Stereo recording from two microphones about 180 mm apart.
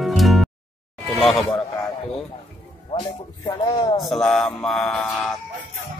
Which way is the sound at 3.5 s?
25° left (ahead or behind).